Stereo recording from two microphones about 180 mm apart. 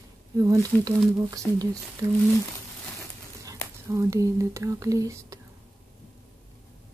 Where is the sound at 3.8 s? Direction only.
15° right (ahead or behind).